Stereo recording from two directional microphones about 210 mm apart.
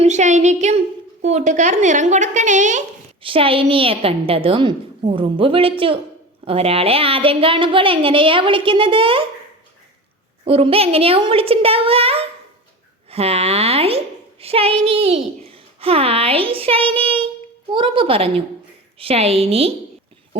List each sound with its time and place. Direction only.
0.0 s a woman's voice: 35° right (ahead or behind)
10.4 s speech: 25° right (ahead or behind)